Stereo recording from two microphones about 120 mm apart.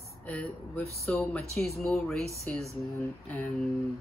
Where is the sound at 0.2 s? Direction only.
10° left (ahead or behind).